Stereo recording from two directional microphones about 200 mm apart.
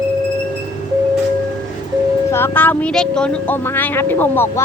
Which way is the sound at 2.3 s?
10° left (ahead or behind).